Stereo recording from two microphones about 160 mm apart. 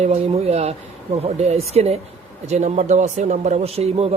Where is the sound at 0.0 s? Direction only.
40° right (ahead or behind).